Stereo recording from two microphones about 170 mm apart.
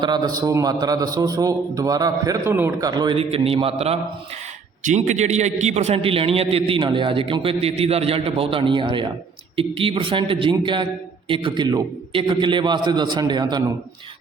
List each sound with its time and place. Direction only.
0.0 s a man's voice: 25° right (ahead or behind)